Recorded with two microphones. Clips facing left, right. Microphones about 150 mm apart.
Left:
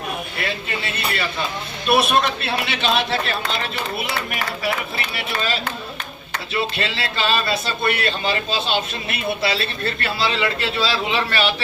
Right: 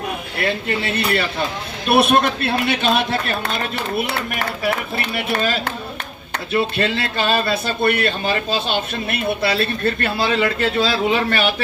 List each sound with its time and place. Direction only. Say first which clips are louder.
0.4 s speech: right 8 dB; 60° right (ahead or behind)
5.1 s speech: right 4 dB; 50° right (ahead or behind)